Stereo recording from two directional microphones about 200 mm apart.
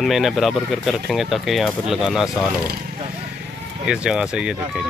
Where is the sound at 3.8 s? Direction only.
5° right (ahead or behind).